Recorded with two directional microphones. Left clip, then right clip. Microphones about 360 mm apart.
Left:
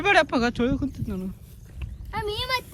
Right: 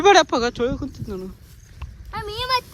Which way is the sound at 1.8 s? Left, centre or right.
Centre.